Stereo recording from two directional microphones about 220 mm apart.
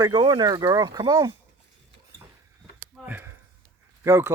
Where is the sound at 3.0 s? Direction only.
10° right (ahead or behind).